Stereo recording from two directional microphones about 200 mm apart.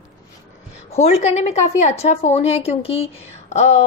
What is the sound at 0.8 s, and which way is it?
A woman's voice, 35° left (ahead or behind).